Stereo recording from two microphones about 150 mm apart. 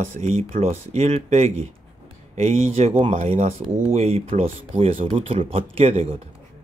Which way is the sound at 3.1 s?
55° right (ahead or behind).